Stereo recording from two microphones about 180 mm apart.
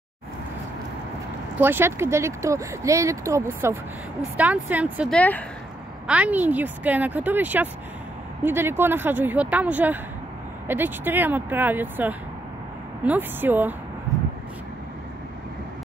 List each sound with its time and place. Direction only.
1.6 s speech: 10° right (ahead or behind)
5.1 s speech: 10° left (ahead or behind)
6.0 s speech: 5° right (ahead or behind)